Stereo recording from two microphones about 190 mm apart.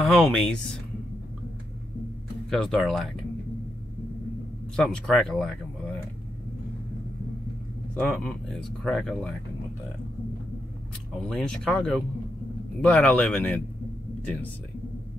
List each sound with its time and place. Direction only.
0.0 s speech: 5° left (ahead or behind)
2.5 s speech: centre (ahead or behind)
4.7 s speech: centre (ahead or behind)
7.9 s speech: 5° left (ahead or behind)
11.2 s speech: 5° left (ahead or behind)